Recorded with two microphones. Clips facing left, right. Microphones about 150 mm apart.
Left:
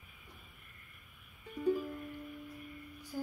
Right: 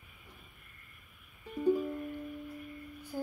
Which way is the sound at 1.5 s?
10° right (ahead or behind).